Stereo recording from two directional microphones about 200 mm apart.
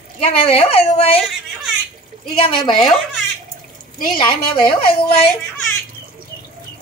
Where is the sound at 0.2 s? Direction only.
30° left (ahead or behind).